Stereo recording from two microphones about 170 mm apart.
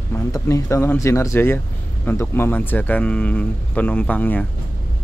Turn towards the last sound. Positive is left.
turn(degrees=10)  # may be behind; listen again after turning